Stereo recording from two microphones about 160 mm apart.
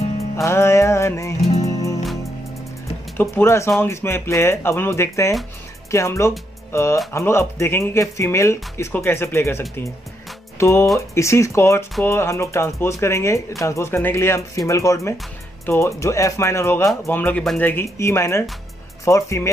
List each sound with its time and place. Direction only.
0.4 s music: 15° left (ahead or behind)
3.2 s speech: 15° left (ahead or behind)
17.4 s speech: centre (ahead or behind)
17.6 s speech: 15° left (ahead or behind)